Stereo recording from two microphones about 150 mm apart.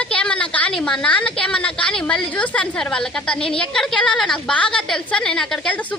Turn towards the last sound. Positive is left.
turn(degrees=10)  # may be behind; listen again after turning